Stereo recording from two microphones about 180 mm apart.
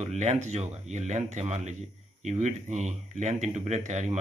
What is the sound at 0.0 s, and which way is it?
Speech, 40° right (ahead or behind).